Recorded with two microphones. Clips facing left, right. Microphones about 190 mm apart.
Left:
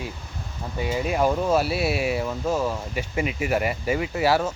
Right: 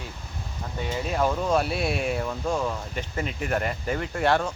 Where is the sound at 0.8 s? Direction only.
10° left (ahead or behind).